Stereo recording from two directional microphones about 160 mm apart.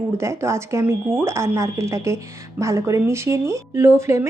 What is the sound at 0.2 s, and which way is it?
Speech, 15° right (ahead or behind).